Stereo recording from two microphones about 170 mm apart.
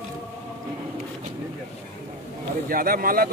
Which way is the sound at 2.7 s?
55° right (ahead or behind).